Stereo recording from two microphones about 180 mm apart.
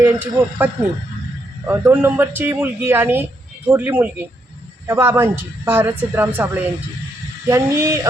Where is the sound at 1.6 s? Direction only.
15° right (ahead or behind).